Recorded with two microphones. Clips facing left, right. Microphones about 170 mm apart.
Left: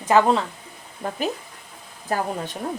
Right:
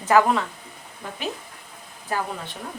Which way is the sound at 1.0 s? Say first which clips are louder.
Left 5 dB; 45° left (ahead or behind).